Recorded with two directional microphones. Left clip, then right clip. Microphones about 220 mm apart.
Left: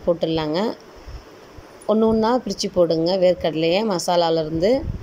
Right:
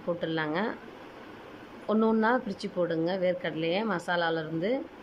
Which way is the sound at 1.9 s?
10° left (ahead or behind).